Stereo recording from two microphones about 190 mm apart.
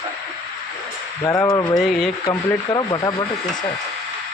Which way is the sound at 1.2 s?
15° left (ahead or behind).